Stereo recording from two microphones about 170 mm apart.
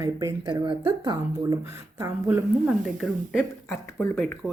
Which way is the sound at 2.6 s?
Centre (ahead or behind).